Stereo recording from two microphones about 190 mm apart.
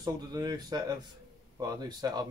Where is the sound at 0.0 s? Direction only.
20° right (ahead or behind).